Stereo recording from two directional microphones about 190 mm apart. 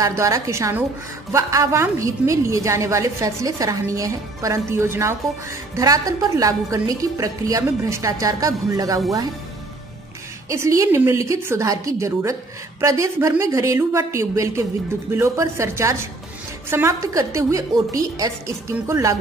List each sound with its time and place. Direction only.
0.0 s a woman's voice: 15° right (ahead or behind)
10.5 s a woman's voice: 15° right (ahead or behind)